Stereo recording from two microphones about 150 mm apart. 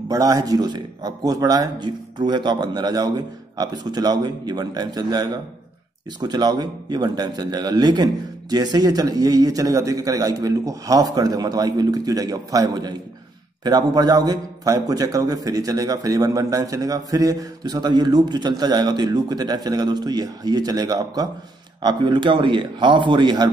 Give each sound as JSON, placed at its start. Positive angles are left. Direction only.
{"t": 0.1, "sound": "a man's voice", "side_deg": -25}